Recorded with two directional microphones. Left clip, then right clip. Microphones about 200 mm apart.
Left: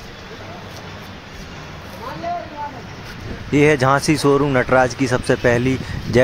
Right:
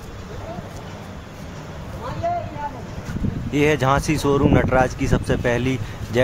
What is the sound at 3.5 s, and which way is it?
Speech, 30° left (ahead or behind).